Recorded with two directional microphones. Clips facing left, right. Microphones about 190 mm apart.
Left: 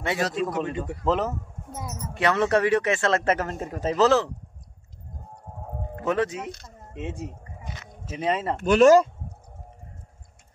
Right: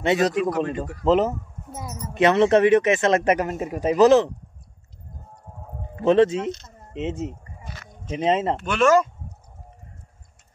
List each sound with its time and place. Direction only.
0.0 s speech: 20° right (ahead or behind)
1.7 s speech: 5° right (ahead or behind)
2.1 s speech: 20° right (ahead or behind)
6.0 s speech: 25° right (ahead or behind)
7.6 s a sound: 20° left (ahead or behind)
8.1 s speech: 25° right (ahead or behind)
8.5 s speech: 40° left (ahead or behind)